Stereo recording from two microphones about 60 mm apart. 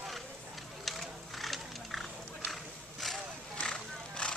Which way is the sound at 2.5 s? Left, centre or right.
Centre.